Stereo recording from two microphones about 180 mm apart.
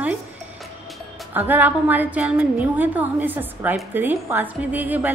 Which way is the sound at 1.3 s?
10° right (ahead or behind).